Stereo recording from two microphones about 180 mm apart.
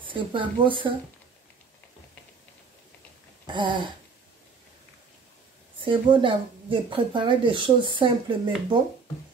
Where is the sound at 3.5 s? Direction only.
25° right (ahead or behind).